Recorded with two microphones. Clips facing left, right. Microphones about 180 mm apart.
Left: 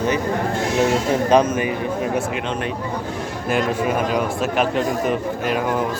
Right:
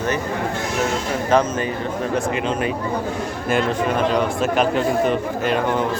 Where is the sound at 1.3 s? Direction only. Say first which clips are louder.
Left 1 dB; 15° left (ahead or behind).